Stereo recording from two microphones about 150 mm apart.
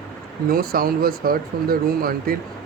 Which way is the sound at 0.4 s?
80° right.